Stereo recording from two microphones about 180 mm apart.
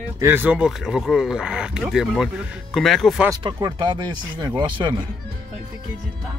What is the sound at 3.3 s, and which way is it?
Speech, 20° right (ahead or behind).